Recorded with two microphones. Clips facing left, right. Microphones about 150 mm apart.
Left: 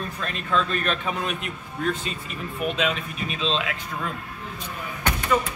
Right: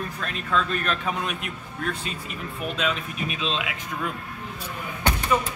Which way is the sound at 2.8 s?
5° right (ahead or behind).